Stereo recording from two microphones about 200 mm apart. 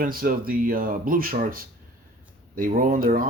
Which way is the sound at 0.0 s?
45° right (ahead or behind).